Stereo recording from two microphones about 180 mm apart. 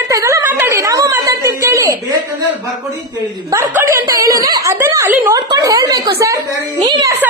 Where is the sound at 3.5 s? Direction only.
15° right (ahead or behind).